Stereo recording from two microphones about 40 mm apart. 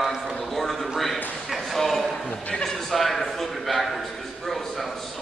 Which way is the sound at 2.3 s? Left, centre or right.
Left.